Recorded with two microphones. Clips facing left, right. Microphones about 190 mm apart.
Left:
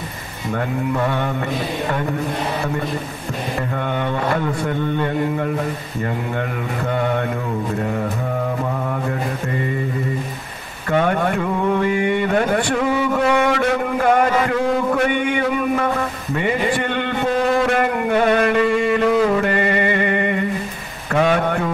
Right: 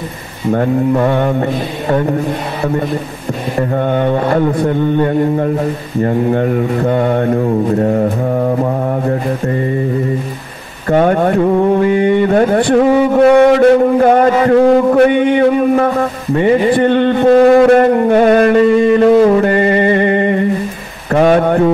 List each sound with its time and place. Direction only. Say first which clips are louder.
0.5 s speech: right 9 dB; 40° right (ahead or behind)
3.7 s a man's voice: right 10 dB; 45° right (ahead or behind)
10.9 s speech: right 7 dB; 40° right (ahead or behind)
17.3 s a sound: right 12 dB; 55° right (ahead or behind)
17.6 s music: right 10 dB; 35° right (ahead or behind)
21.1 s mantra: right 7 dB; 45° right (ahead or behind)